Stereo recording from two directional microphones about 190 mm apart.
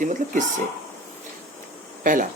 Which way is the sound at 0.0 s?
40° right (ahead or behind).